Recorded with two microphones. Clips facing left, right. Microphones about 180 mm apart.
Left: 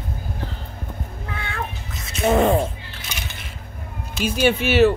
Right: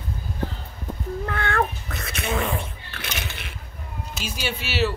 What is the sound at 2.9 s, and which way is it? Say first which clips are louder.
Coin: right 2 dB; 65° right (ahead or behind).